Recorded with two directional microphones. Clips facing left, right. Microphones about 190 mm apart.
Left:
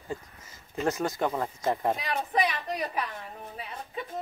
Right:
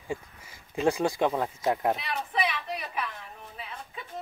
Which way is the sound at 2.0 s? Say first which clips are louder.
Left 3 dB; 40° left (ahead or behind).